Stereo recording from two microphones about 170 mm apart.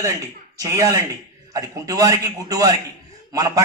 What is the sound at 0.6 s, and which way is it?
A man's voice, 20° right (ahead or behind).